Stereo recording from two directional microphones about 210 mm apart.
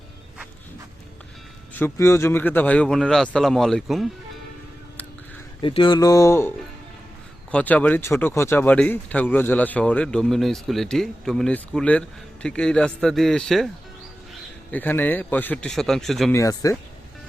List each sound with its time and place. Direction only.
1.7 s speech: 10° left (ahead or behind)
5.6 s a man's voice: 25° left (ahead or behind)
7.5 s speech: 5° left (ahead or behind)
14.7 s a man's voice: 10° left (ahead or behind)
16.3 s a man's voice: 15° left (ahead or behind)